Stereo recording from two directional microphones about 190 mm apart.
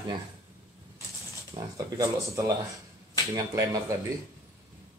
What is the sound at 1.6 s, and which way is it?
A man's voice, 25° right (ahead or behind).